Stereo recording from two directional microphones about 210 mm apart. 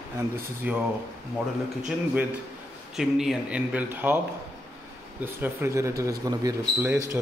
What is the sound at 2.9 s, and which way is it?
Speech, centre (ahead or behind).